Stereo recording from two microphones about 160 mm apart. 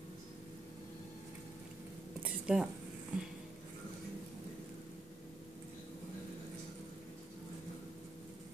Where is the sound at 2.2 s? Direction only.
5° right (ahead or behind).